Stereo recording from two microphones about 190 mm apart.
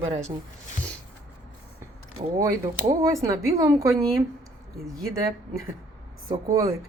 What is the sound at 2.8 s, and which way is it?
Speech, 20° right (ahead or behind).